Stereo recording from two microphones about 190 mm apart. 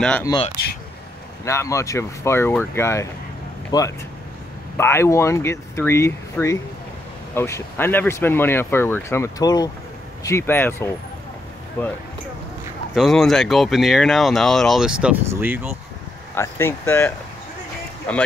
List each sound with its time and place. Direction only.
1.4 s speech: 15° left (ahead or behind); by 15.7 s 5° right (ahead or behind)
16.3 s speech: 15° left (ahead or behind)